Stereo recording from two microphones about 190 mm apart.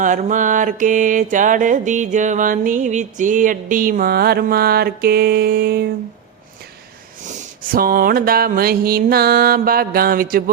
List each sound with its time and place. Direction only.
0.0 s mantra: 40° right (ahead or behind)
7.3 s mantra: 45° right (ahead or behind)